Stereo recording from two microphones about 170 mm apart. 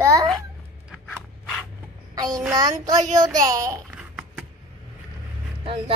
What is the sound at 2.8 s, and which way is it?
Speech, 20° right (ahead or behind).